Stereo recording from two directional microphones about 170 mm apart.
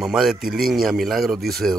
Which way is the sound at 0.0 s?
5° right (ahead or behind).